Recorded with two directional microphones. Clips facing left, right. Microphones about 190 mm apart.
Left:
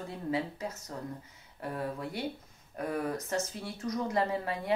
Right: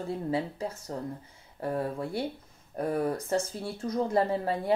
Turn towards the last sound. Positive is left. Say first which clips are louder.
# right 4 dB
turn(degrees=-35)  # may be behind; listen again after turning